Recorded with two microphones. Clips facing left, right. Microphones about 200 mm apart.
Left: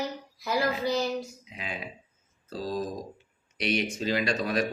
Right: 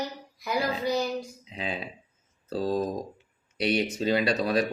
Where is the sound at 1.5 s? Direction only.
30° right (ahead or behind).